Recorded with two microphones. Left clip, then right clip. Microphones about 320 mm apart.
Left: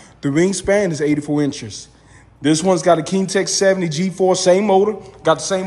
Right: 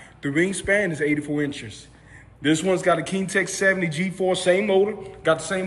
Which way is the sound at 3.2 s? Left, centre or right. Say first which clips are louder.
Left 6 dB; centre.